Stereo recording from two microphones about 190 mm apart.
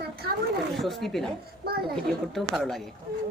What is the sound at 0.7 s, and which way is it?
Speech, centre (ahead or behind).